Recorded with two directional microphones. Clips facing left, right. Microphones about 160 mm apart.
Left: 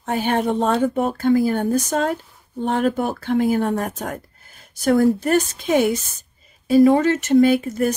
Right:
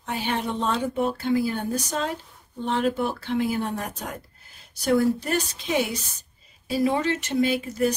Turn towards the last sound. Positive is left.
turn(degrees=50)  # may be behind; listen again after turning